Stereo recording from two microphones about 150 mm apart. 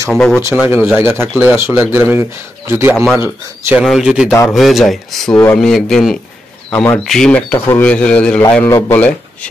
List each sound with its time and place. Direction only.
0.1 s speech: 5° left (ahead or behind)
0.4 s speech: 15° right (ahead or behind)
3.8 s speech: 5° right (ahead or behind)